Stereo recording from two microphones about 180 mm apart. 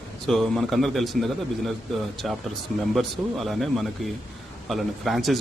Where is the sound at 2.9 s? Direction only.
Centre (ahead or behind).